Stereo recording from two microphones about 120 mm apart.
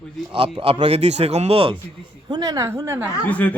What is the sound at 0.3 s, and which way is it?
A man's voice, 50° right (ahead or behind).